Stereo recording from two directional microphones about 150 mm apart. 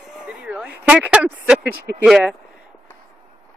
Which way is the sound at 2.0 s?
5° right (ahead or behind).